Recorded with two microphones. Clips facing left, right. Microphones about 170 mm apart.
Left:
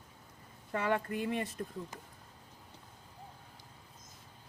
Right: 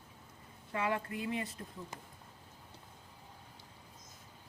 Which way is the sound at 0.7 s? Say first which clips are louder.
Left 3 dB; 55° left (ahead or behind).